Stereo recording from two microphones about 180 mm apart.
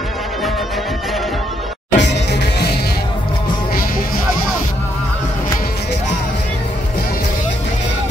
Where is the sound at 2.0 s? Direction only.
75° left (ahead or behind).